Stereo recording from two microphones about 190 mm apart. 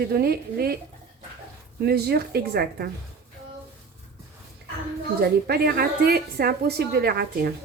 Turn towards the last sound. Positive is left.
turn(degrees=-55)  # may be behind; listen again after turning